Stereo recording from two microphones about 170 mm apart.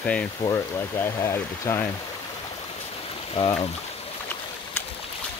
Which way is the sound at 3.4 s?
35° left (ahead or behind).